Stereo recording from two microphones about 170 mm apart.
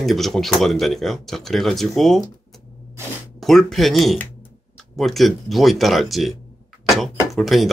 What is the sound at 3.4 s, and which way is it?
Speech, centre (ahead or behind).